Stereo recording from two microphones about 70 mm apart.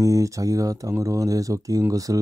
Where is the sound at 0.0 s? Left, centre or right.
Right.